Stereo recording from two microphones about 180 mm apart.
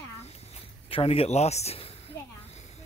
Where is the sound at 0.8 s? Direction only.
30° left (ahead or behind).